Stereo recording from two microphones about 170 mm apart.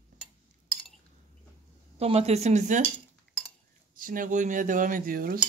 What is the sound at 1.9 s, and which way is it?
Speech, 35° right (ahead or behind).